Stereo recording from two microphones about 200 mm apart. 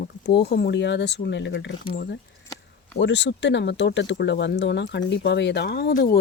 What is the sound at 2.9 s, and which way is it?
Speech, 60° left (ahead or behind).